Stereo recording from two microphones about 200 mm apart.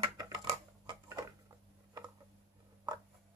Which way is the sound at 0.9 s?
20° right (ahead or behind).